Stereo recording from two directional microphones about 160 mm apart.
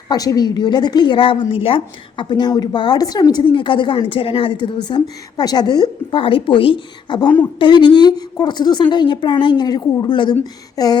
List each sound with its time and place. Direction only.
0.1 s a woman's voice: 25° left (ahead or behind)